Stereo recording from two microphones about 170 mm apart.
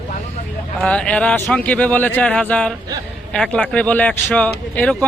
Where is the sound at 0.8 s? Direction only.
5° left (ahead or behind).